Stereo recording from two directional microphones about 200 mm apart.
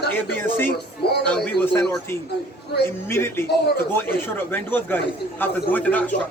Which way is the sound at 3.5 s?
55° left (ahead or behind).